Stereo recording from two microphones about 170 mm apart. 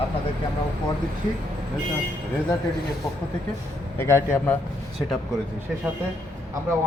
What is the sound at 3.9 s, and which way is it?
Speech, 15° left (ahead or behind).